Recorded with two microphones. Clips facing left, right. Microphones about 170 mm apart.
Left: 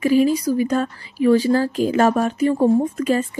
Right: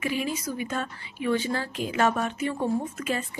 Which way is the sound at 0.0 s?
40° left (ahead or behind).